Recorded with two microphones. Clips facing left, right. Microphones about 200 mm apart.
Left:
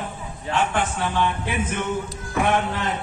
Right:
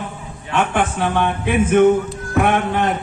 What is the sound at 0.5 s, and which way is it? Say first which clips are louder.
Speech: right 5 dB; 60° right (ahead or behind).